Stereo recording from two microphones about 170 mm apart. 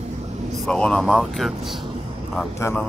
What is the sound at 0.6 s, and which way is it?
Speech, 5° left (ahead or behind).